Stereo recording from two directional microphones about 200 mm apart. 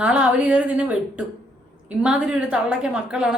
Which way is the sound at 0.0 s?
5° right (ahead or behind).